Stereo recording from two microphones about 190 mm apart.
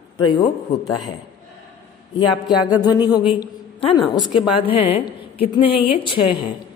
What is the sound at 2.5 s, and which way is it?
Music, 5° right (ahead or behind).